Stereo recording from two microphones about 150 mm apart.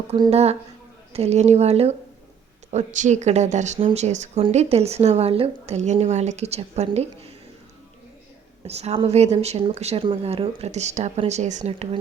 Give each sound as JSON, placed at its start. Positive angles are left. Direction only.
{"t": 0.3, "sound": "speech", "side_deg": -45}
{"t": 8.6, "sound": "speech", "side_deg": -45}